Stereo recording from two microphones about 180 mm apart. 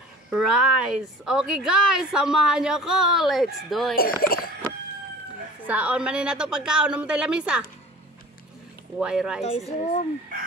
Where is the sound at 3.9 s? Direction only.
55° left (ahead or behind).